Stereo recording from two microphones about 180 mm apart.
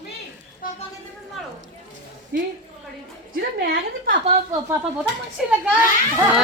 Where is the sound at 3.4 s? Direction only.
60° right (ahead or behind).